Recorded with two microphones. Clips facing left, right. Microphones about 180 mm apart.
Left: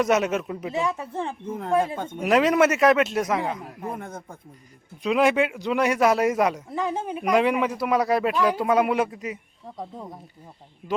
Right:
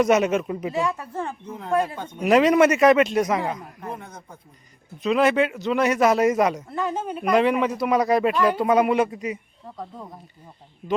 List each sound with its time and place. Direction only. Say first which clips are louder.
0.0 s speech: right 3 dB; centre (ahead or behind)
0.7 s speech: left 1 dB; 20° left (ahead or behind)
2.1 s speech: right 3 dB; centre (ahead or behind)
3.9 s speech: left 3 dB; 50° left (ahead or behind)
5.0 s a man's voice: right 1 dB; 10° left (ahead or behind)